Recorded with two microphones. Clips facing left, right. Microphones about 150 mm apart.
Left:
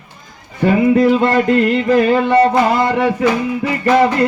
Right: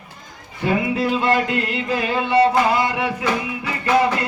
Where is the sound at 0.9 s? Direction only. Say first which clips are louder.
Left 7 dB; 50° left (ahead or behind).